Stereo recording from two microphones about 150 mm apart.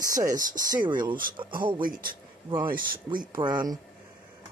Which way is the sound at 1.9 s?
70° right (ahead or behind).